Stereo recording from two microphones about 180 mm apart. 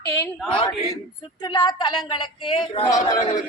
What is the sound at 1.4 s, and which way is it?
Speech, 25° left (ahead or behind).